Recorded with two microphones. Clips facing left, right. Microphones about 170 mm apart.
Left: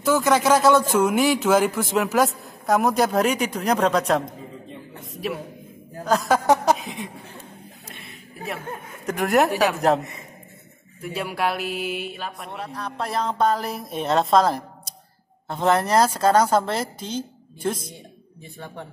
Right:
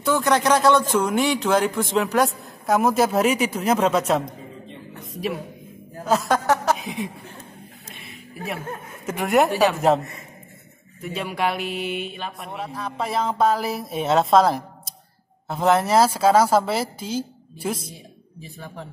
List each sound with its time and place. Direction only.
0.0 s speech: centre (ahead or behind)
6.4 s a sound: 15° left (ahead or behind)
6.8 s speech: centre (ahead or behind)
9.0 s speech: centre (ahead or behind)